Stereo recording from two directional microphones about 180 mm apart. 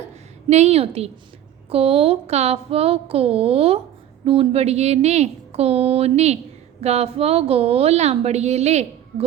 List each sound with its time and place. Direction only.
0.4 s a woman's voice: 35° right (ahead or behind)